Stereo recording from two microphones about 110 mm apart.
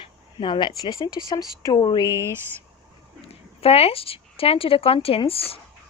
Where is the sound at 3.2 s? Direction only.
65° left (ahead or behind).